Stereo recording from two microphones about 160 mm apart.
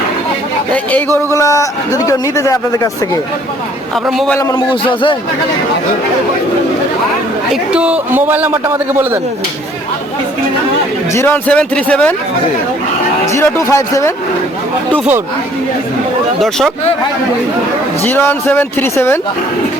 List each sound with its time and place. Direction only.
0.7 s a man's voice: 10° left (ahead or behind)
4.4 s a man's voice: 20° left (ahead or behind)
4.7 s speech: 30° left (ahead or behind)
7.5 s a man's voice: 5° right (ahead or behind)
11.1 s speech: 15° left (ahead or behind)
13.3 s speech: 20° left (ahead or behind)
16.4 s speech: centre (ahead or behind)
18.0 s speech: 15° left (ahead or behind)